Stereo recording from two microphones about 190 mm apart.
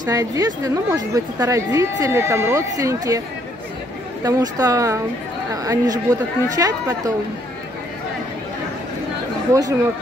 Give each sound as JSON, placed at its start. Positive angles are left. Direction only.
{"t": 0.0, "sound": "speech", "side_deg": -20}
{"t": 4.2, "sound": "speech", "side_deg": -20}
{"t": 9.5, "sound": "speech", "side_deg": -20}